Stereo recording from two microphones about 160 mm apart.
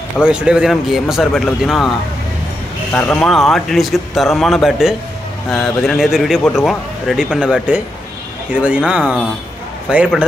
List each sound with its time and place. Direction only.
0.2 s speech: 5° right (ahead or behind)
2.9 s speech: 10° left (ahead or behind); by 10.2 s 5° right (ahead or behind)